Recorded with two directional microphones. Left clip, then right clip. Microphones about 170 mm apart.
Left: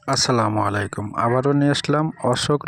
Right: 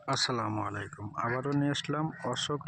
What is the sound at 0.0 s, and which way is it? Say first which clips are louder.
Speech: left 11 dB; 50° left (ahead or behind).